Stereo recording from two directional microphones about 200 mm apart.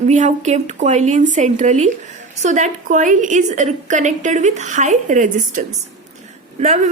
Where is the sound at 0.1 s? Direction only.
35° right (ahead or behind).